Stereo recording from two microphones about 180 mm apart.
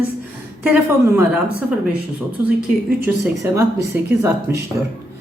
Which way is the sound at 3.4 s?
15° right (ahead or behind).